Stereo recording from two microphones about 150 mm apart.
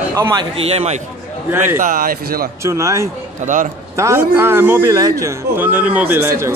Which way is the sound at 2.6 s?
20° right (ahead or behind).